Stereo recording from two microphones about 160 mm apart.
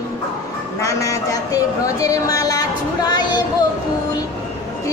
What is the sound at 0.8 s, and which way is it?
A woman's voice, 20° left (ahead or behind).